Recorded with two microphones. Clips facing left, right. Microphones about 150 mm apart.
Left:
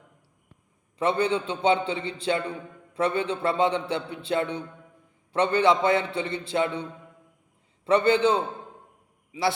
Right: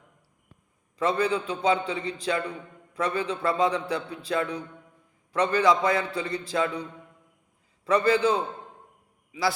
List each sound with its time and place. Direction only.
0.9 s a man's voice: 25° left (ahead or behind)
7.9 s a man's voice: 30° left (ahead or behind)